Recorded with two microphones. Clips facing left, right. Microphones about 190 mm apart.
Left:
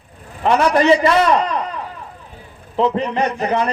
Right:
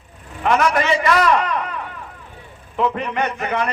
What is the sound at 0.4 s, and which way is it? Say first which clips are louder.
A man's voice: left 4 dB; 30° left (ahead or behind).